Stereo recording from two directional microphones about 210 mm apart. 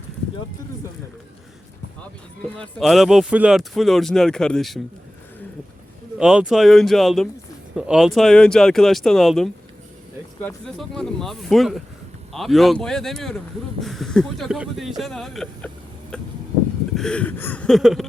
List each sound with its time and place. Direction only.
2.4 s speech: 5° left (ahead or behind)
6.1 s speech: 5° right (ahead or behind)